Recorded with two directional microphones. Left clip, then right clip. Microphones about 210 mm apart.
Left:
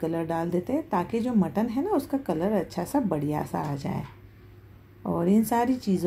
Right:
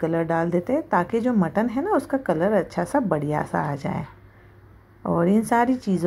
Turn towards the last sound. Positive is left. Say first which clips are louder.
# right 4 dB
turn(degrees=-15)  # may be behind; listen again after turning